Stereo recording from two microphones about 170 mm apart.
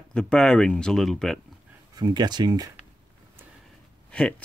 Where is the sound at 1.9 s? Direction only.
25° right (ahead or behind).